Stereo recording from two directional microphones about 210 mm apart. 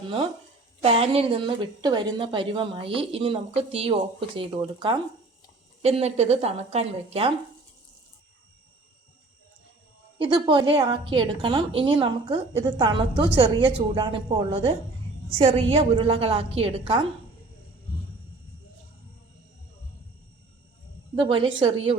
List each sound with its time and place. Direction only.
0.8 s a woman's voice: 30° right (ahead or behind)
10.2 s a woman's voice: 20° right (ahead or behind)
21.2 s a woman's voice: 25° right (ahead or behind)